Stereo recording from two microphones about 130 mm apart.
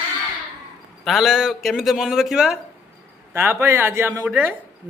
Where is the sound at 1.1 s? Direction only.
Centre (ahead or behind).